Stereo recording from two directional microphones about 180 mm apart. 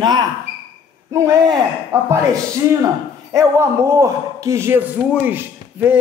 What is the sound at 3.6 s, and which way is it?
A man's voice, 15° right (ahead or behind).